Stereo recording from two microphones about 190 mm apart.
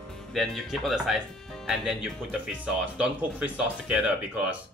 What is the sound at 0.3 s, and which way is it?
Speech, centre (ahead or behind).